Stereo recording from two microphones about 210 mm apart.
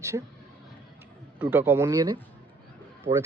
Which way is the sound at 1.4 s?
10° right (ahead or behind).